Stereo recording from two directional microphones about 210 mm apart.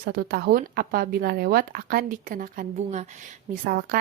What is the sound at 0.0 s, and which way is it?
A woman's voice, 45° right (ahead or behind).